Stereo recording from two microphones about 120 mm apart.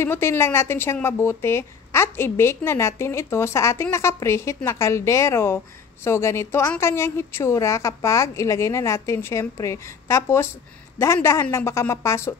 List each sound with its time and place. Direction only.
0.0 s a woman's voice: 20° left (ahead or behind)